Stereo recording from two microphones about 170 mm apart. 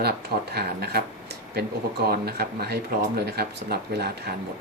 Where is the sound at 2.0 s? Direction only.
65° right (ahead or behind).